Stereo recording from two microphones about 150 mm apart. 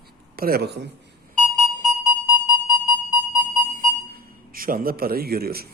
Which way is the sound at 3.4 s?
65° right (ahead or behind).